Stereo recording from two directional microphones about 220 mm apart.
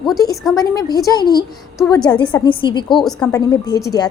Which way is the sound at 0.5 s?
15° left (ahead or behind).